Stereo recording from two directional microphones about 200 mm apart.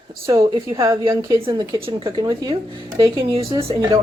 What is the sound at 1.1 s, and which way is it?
Speech, 25° right (ahead or behind).